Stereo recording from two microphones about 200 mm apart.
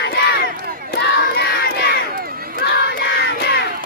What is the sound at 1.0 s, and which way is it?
Crowd, 60° left (ahead or behind).